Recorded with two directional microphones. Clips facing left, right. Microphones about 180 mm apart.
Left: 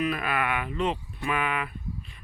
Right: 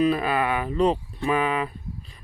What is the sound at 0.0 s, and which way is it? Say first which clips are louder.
Speech: right 6 dB; 30° right (ahead or behind).